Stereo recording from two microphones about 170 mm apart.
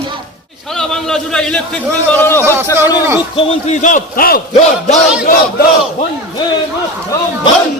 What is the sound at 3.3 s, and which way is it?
A man's voice, 45° left (ahead or behind).